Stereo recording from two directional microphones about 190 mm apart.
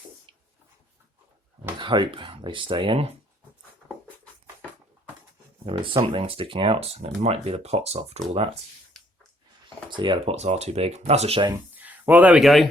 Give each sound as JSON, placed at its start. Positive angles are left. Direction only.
{"t": 1.8, "sound": "speech", "side_deg": -25}
{"t": 5.6, "sound": "speech", "side_deg": -30}
{"t": 8.9, "sound": "snort", "side_deg": 0}
{"t": 9.6, "sound": "speech", "side_deg": -25}
{"t": 11.7, "sound": "a sound", "side_deg": -10}